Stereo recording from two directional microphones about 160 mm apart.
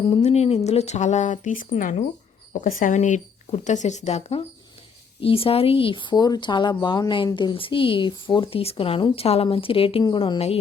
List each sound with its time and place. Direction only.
0.2 s speech: 40° left (ahead or behind)